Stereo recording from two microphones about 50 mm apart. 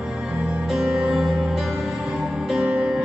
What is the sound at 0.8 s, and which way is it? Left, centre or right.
Music, centre.